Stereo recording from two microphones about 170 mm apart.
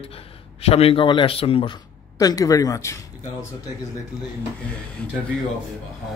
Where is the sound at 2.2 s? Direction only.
20° left (ahead or behind).